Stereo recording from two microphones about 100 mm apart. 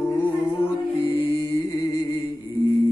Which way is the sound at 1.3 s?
25° left (ahead or behind).